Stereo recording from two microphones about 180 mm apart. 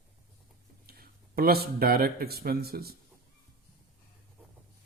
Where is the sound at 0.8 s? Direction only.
60° right (ahead or behind).